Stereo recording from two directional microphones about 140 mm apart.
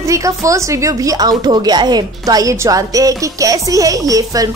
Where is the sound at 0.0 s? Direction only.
20° right (ahead or behind).